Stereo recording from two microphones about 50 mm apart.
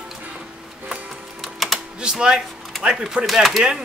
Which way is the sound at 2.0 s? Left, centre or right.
Centre.